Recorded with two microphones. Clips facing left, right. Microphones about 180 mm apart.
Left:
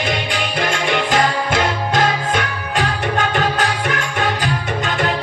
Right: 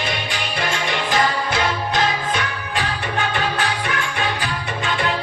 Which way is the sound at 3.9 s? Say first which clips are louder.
Left 3 dB; 45° left (ahead or behind).